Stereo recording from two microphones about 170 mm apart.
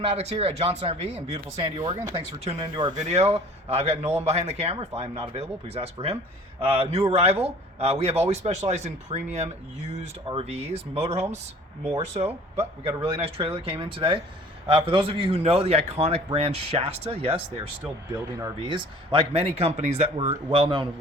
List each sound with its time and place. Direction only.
0.2 s speech: 35° right (ahead or behind)
3.0 s speech: 40° right (ahead or behind)
18.1 s speech: 20° right (ahead or behind)